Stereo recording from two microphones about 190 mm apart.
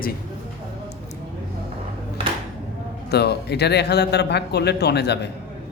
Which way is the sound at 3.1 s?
60° left (ahead or behind).